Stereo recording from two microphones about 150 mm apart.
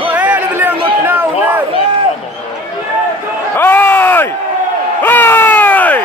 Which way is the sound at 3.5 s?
15° left (ahead or behind).